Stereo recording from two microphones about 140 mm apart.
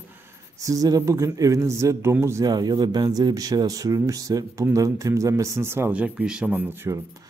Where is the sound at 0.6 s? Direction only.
25° right (ahead or behind).